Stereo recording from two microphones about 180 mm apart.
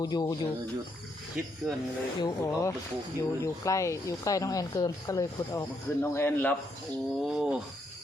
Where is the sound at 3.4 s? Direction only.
15° left (ahead or behind).